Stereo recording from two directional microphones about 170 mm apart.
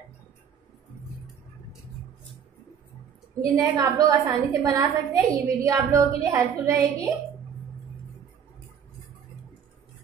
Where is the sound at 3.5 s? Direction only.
20° right (ahead or behind).